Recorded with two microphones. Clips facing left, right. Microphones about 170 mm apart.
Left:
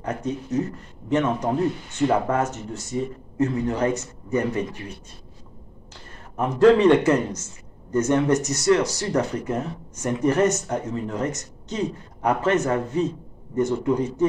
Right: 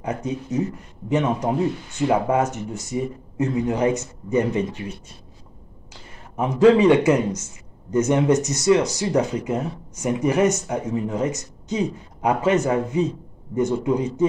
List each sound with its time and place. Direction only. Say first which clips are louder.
0.0 s speech: right 1 dB; 15° right (ahead or behind)
6.3 s speech: right 1 dB; 10° right (ahead or behind)